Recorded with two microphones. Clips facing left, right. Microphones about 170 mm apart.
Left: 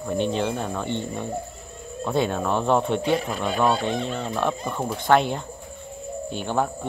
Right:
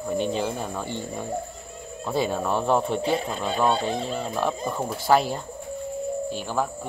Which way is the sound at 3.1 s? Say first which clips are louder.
Left 2 dB; 30° right (ahead or behind).